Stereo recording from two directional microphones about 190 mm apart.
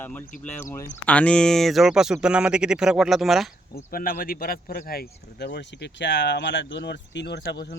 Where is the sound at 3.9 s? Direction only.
50° left (ahead or behind).